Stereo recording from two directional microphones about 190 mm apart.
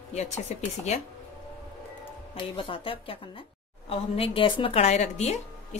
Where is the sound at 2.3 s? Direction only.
30° left (ahead or behind).